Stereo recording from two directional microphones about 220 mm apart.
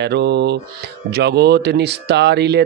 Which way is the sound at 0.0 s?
50° right (ahead or behind).